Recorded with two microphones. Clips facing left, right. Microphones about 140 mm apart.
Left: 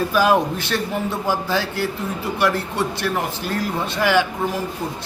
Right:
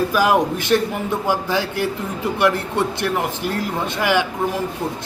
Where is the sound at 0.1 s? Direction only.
15° right (ahead or behind).